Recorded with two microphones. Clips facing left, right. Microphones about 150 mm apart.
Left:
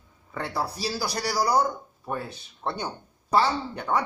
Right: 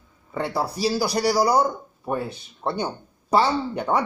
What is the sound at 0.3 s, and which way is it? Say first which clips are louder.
Speech: right 4 dB; 10° right (ahead or behind).